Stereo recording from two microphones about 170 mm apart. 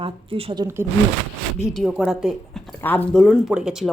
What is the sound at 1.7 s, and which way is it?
A woman's voice, centre (ahead or behind).